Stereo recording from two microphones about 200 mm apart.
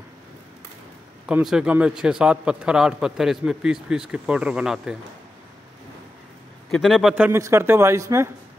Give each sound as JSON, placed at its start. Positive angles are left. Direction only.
{"t": 1.2, "sound": "a man's voice", "side_deg": -5}
{"t": 6.7, "sound": "speech", "side_deg": 0}